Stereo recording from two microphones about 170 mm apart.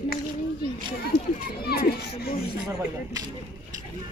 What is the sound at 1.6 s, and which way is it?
Speech, 65° left (ahead or behind).